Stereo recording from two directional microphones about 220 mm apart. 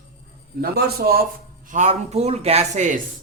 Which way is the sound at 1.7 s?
30° right (ahead or behind).